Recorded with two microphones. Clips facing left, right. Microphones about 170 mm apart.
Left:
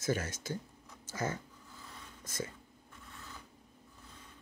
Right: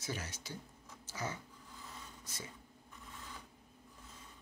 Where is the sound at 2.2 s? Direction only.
45° left (ahead or behind).